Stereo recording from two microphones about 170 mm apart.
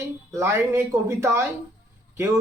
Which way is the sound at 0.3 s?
15° right (ahead or behind).